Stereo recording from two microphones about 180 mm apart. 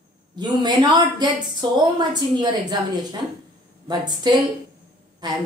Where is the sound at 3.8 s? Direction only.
25° right (ahead or behind).